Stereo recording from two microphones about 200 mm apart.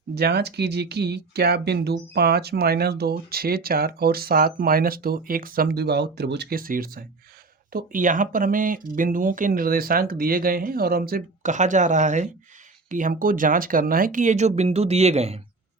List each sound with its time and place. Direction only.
0.1 s speech: 55° right (ahead or behind); by 15.4 s 30° right (ahead or behind)